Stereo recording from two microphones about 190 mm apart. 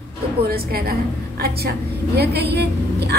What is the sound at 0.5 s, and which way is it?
A woman's voice, 55° right (ahead or behind).